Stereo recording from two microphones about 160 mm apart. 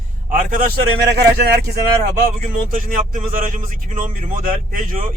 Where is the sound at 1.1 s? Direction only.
90° right.